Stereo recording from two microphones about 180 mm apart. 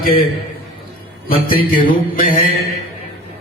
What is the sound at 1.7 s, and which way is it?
Speech, 50° left (ahead or behind).